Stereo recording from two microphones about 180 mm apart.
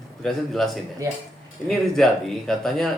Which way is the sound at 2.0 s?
Centre (ahead or behind).